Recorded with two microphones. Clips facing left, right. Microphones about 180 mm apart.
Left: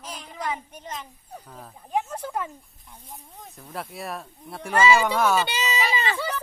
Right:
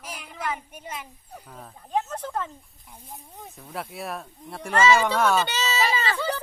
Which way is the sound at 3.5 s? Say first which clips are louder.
Even; centre (ahead or behind).